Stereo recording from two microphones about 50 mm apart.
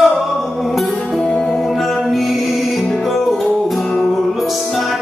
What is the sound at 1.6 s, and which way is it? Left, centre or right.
Music, centre.